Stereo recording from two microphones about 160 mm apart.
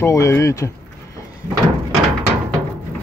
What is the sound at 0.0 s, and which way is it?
Speech, 20° left (ahead or behind).